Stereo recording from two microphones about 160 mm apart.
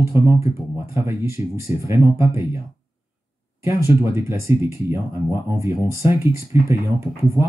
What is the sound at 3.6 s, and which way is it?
Speech, 15° right (ahead or behind).